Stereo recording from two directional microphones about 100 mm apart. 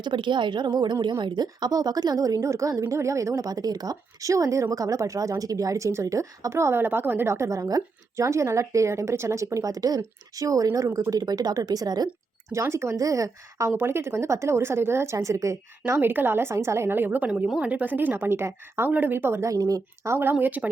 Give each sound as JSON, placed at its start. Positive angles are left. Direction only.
{"t": 0.0, "sound": "a woman's voice", "side_deg": -50}
{"t": 12.5, "sound": "a woman's voice", "side_deg": -30}
{"t": 15.9, "sound": "speech", "side_deg": -20}
{"t": 20.4, "sound": "speech", "side_deg": -15}